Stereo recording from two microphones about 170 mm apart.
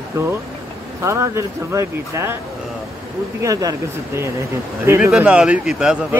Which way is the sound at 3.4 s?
20° right (ahead or behind).